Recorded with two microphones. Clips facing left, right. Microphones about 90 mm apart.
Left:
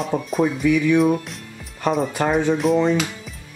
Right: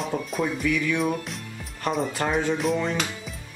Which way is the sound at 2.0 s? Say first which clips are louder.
Left 4 dB; 15° left (ahead or behind).